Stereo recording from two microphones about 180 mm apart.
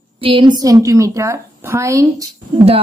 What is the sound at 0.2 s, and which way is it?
A woman's voice, 30° right (ahead or behind).